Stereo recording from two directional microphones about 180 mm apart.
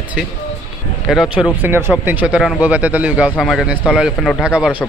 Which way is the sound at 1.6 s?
15° right (ahead or behind).